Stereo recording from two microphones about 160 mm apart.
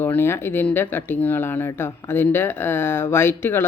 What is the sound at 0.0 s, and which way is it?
Speech, 10° left (ahead or behind).